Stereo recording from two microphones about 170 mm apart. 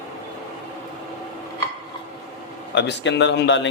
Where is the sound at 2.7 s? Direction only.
90° left.